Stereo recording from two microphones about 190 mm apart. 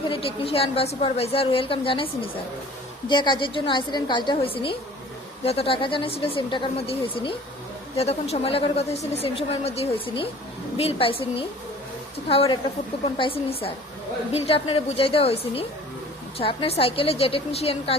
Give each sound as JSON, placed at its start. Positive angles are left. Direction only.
{"t": 0.0, "sound": "a woman's voice", "side_deg": 30}